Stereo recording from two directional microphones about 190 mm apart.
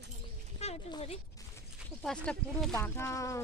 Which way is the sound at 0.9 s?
30° left (ahead or behind).